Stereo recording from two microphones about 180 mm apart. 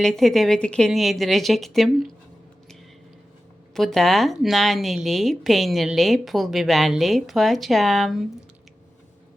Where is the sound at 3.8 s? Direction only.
Centre (ahead or behind).